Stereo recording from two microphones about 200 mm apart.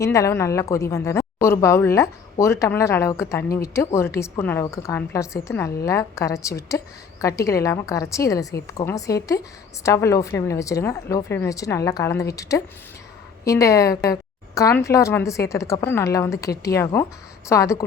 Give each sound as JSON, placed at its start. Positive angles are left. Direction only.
{"t": 0.0, "sound": "a woman's voice", "side_deg": 15}